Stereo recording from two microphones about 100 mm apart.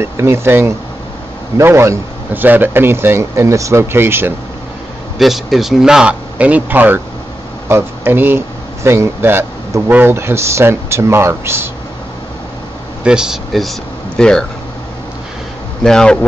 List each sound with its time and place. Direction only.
0.0 s speech: 25° right (ahead or behind)
5.2 s speech: centre (ahead or behind); by 11.7 s 25° right (ahead or behind)
13.0 s speech: 5° right (ahead or behind)
15.8 s speech: 5° left (ahead or behind)